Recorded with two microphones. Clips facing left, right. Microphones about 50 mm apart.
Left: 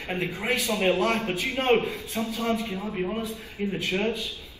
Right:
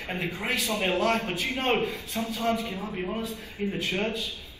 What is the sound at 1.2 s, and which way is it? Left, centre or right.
Speech, left.